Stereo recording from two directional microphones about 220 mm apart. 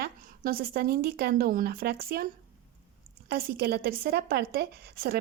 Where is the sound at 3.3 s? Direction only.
45° right (ahead or behind).